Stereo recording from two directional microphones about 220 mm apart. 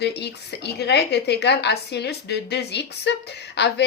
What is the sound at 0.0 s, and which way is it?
Speech, 50° left (ahead or behind).